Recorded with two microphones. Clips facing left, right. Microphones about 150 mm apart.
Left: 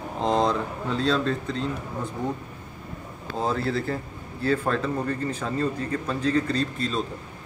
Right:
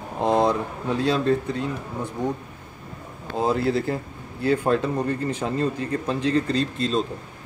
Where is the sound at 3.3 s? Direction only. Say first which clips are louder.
Right 4 dB; 15° right (ahead or behind).